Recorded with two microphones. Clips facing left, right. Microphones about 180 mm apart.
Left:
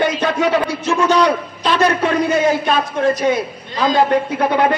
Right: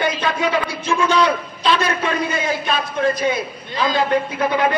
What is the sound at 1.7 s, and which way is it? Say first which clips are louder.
A woman's voice: left 4 dB; 45° left (ahead or behind).